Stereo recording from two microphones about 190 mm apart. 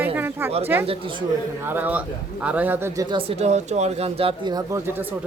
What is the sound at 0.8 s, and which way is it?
Speech, 30° right (ahead or behind).